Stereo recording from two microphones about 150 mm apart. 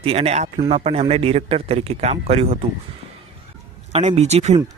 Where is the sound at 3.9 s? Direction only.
45° right (ahead or behind).